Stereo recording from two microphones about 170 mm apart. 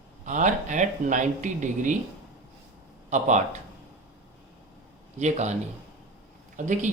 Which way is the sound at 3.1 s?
45° right (ahead or behind).